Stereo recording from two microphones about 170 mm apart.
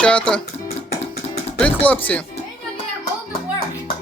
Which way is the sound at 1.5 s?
10° left (ahead or behind).